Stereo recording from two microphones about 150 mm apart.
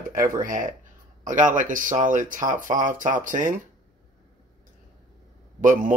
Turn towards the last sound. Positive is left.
turn(degrees=-60)  # may be behind; listen again after turning